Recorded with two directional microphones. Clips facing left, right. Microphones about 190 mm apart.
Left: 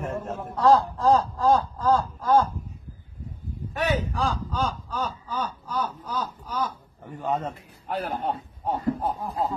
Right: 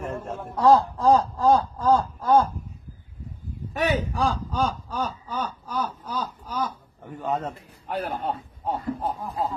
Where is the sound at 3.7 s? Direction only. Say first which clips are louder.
Right 2 dB; 15° right (ahead or behind).